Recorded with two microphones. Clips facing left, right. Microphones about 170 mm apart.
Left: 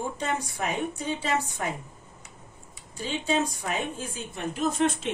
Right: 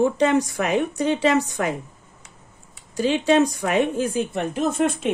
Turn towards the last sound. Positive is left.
turn(degrees=-55)  # may be behind; listen again after turning